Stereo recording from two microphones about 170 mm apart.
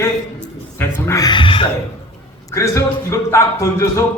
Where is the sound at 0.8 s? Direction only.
15° left (ahead or behind); by 1.6 s 30° left (ahead or behind).